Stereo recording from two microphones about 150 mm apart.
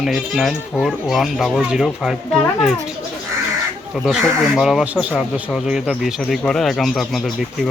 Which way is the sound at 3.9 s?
5° right (ahead or behind).